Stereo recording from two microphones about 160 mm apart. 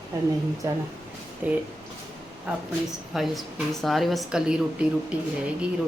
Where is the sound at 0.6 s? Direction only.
20° right (ahead or behind).